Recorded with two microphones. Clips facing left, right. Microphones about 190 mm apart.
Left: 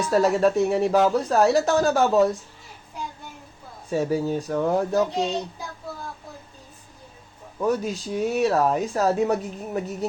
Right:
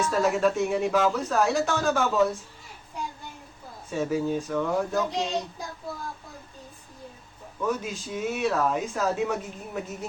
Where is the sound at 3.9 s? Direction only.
35° left (ahead or behind).